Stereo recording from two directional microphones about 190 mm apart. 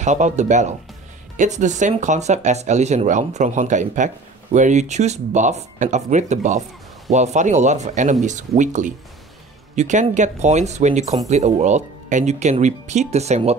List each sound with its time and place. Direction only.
0.0 s speech: 40° right (ahead or behind)